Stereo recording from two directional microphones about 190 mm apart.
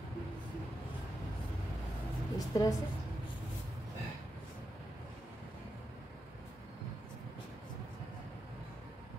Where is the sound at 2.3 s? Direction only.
20° left (ahead or behind).